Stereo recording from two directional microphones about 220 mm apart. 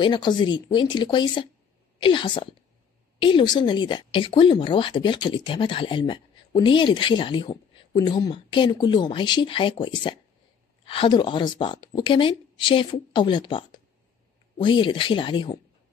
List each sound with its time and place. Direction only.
0.0 s speech: 20° left (ahead or behind)